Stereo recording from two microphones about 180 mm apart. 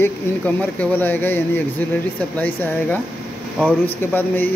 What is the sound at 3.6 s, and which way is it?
Speech, 10° left (ahead or behind).